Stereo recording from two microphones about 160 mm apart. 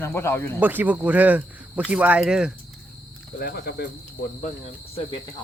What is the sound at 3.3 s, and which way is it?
Speech, 70° left (ahead or behind).